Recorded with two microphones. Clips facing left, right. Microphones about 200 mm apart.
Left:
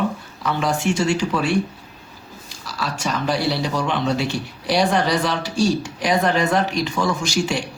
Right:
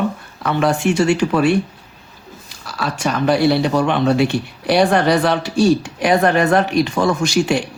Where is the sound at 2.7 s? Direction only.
55° right (ahead or behind).